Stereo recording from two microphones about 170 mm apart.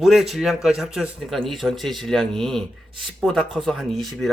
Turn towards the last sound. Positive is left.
turn(degrees=0)  # may be behind; listen again after turning